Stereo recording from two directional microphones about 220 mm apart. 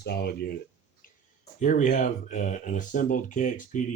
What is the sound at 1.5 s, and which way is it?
Speech, 35° left (ahead or behind).